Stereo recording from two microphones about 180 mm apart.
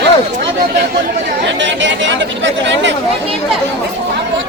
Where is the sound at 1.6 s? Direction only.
90° right.